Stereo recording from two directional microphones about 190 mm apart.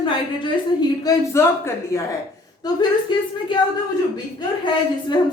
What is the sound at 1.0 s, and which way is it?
Speech, 15° left (ahead or behind).